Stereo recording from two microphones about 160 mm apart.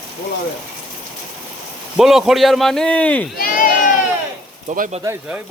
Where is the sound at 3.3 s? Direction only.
65° left (ahead or behind).